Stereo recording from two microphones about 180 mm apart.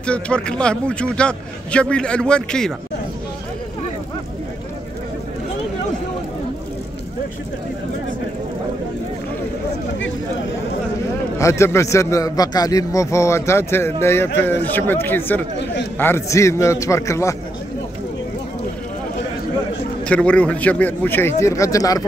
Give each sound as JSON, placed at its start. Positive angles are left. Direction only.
{"t": 0.0, "sound": "a man's voice", "side_deg": 5}
{"t": 11.3, "sound": "a man's voice", "side_deg": 15}
{"t": 20.1, "sound": "a man's voice", "side_deg": 5}